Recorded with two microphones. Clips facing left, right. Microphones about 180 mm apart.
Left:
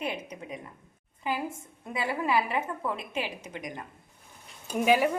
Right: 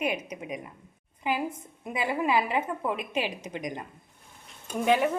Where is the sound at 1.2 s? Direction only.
15° right (ahead or behind).